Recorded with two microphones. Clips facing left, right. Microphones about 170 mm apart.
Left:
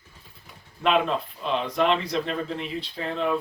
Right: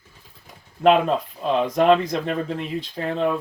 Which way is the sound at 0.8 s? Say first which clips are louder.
Right 6 dB; 40° right (ahead or behind).